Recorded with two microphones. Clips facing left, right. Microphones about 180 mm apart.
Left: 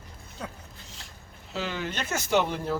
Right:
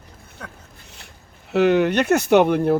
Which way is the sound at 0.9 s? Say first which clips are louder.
Right 2 dB; 65° right (ahead or behind).